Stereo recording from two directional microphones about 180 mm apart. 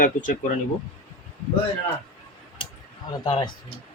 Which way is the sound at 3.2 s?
25° left (ahead or behind).